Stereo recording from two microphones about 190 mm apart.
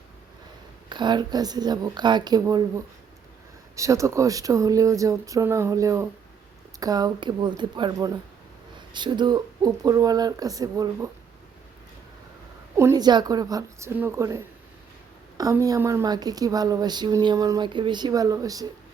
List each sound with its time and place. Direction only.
0.9 s a woman's voice: 25° right (ahead or behind)
12.7 s a woman's voice: 15° right (ahead or behind)